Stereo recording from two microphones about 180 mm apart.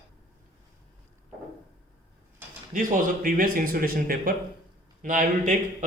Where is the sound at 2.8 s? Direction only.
50° right (ahead or behind).